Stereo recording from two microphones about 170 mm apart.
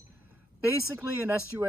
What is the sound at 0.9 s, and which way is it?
Speech, 15° right (ahead or behind).